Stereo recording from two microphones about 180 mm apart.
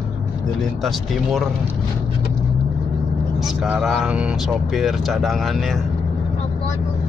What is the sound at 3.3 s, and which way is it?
Speech, 5° right (ahead or behind).